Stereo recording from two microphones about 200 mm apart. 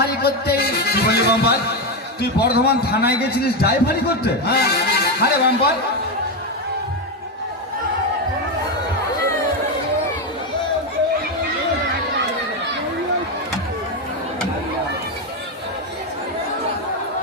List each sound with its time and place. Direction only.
0.0 s a man's voice: 55° left (ahead or behind)